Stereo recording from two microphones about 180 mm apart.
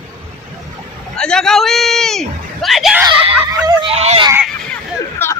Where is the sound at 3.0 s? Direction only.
20° right (ahead or behind).